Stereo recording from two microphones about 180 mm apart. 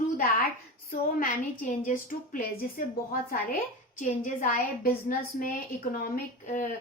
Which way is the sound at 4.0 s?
45° left (ahead or behind).